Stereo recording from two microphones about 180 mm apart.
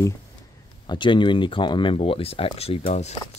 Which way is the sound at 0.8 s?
25° left (ahead or behind).